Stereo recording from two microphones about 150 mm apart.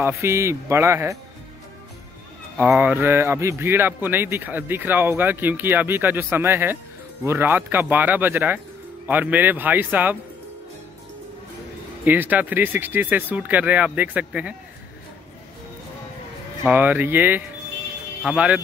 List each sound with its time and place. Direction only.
0.0 s speech: 20° right (ahead or behind)
2.5 s speech: 5° right (ahead or behind)
12.0 s speech: 10° right (ahead or behind)
16.6 s speech: 10° right (ahead or behind)